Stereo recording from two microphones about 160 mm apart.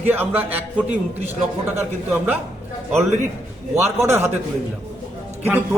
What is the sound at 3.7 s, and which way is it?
Speech, 15° right (ahead or behind).